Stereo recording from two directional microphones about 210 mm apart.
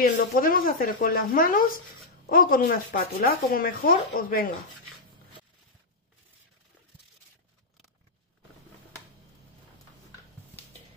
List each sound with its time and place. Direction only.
0.0 s speech: 40° left (ahead or behind)